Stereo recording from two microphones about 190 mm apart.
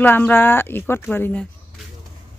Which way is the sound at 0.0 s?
10° left (ahead or behind).